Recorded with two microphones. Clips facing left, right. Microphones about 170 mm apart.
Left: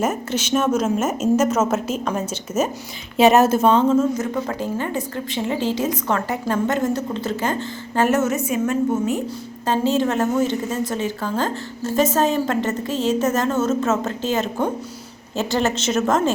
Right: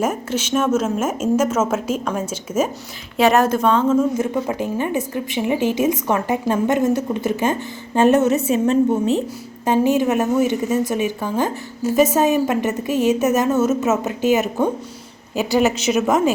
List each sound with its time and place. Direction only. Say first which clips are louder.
0.3 s a woman's voice: right 1 dB; centre (ahead or behind)
3.2 s a woman's voice: left 1 dB; 20° left (ahead or behind)
4.4 s a woman's voice: right 3 dB; 15° right (ahead or behind)